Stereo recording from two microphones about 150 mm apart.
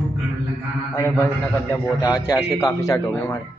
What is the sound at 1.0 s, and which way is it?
A man's voice, 20° left (ahead or behind).